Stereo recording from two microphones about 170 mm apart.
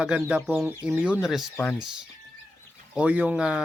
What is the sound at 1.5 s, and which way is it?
Speech, 10° left (ahead or behind).